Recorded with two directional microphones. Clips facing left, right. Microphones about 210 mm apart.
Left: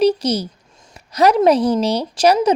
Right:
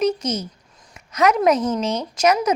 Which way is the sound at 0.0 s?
35° left (ahead or behind).